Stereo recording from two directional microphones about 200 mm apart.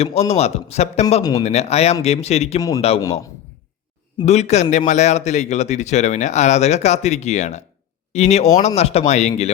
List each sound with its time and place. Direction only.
0.0 s speech: 30° left (ahead or behind)
1.2 s speech: 20° left (ahead or behind)
1.5 s speech: 35° left (ahead or behind)
2.6 s a man's voice: 15° left (ahead or behind)
4.2 s speech: 35° left (ahead or behind)